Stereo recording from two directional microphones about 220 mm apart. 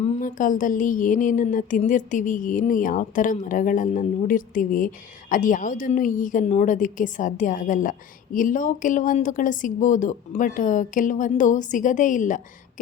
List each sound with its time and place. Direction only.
0.2 s speech: 35° left (ahead or behind)